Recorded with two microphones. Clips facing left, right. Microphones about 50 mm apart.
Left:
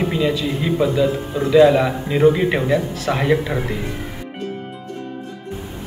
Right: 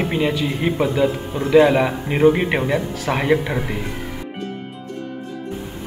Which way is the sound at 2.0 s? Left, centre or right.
Right.